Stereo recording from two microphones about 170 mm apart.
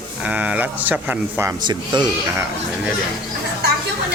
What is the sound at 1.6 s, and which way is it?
Speech, 25° right (ahead or behind).